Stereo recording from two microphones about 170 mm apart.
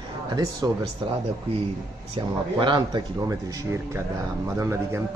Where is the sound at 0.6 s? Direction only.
20° right (ahead or behind).